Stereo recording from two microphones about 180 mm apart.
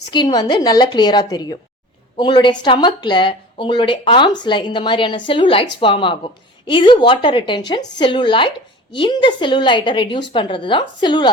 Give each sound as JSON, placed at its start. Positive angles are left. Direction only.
{"t": 0.1, "sound": "speech", "side_deg": 25}